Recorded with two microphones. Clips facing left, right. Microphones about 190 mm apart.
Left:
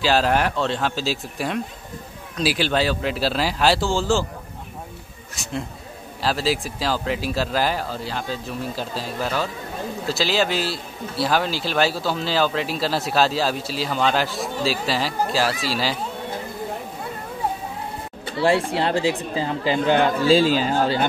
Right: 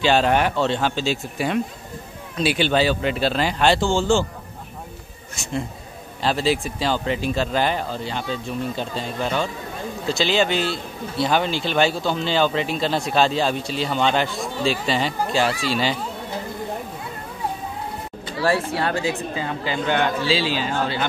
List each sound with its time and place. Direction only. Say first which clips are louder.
0.0 s speech: right 1 dB; centre (ahead or behind)
5.3 s speech: right 2 dB; centre (ahead or behind)
18.4 s speech: left 2 dB; 25° left (ahead or behind)